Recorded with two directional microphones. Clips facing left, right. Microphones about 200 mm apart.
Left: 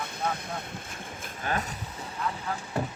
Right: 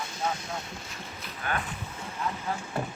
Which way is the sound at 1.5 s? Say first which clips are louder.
Left 2 dB; 30° left (ahead or behind).